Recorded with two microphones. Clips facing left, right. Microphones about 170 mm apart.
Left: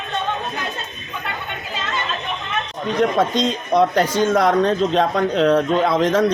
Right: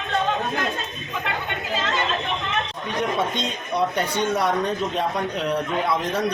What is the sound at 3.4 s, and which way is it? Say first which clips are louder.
A man's voice: left 7 dB; 90° left.